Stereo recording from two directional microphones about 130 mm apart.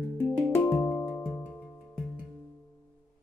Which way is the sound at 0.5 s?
15° left (ahead or behind).